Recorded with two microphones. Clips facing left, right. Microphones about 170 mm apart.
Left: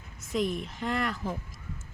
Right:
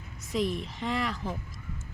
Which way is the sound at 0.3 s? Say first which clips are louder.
Even; centre (ahead or behind).